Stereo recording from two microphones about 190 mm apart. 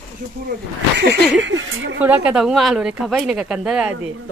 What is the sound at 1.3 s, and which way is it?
Speech, 75° right (ahead or behind).